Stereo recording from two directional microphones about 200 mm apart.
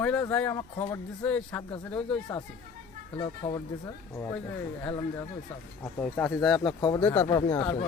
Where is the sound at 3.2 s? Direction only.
20° left (ahead or behind).